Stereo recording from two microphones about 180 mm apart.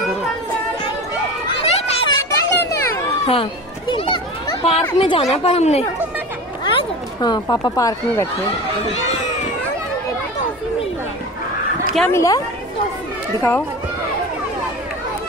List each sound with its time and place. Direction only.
1.5 s children playing: 35° left (ahead or behind)
2.0 s children playing: 15° left (ahead or behind)
3.3 s children playing: 30° left (ahead or behind)
4.9 s speech: 30° left (ahead or behind)
12.1 s a woman's voice: 15° left (ahead or behind)